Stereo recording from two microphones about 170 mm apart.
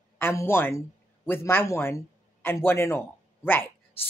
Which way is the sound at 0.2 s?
15° left (ahead or behind).